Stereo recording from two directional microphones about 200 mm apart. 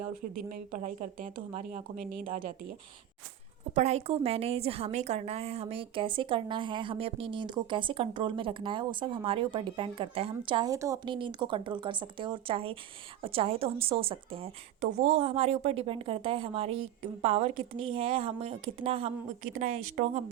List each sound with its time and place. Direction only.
0.5 s speech: 40° right (ahead or behind)
3.8 s a woman's voice: 35° right (ahead or behind)